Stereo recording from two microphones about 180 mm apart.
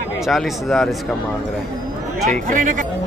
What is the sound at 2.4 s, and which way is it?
Speech, 45° right (ahead or behind).